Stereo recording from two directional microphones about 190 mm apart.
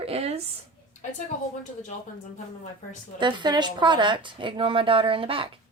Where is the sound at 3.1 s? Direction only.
25° right (ahead or behind).